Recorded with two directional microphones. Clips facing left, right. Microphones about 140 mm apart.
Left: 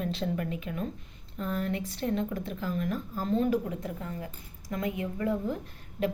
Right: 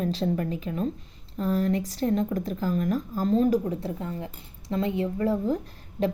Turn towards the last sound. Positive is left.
turn(degrees=-35)  # may be behind; listen again after turning